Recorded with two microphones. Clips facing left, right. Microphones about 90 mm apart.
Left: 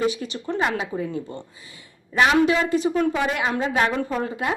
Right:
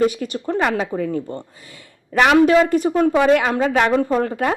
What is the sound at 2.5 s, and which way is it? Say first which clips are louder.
Speech: right 6 dB; 50° right (ahead or behind).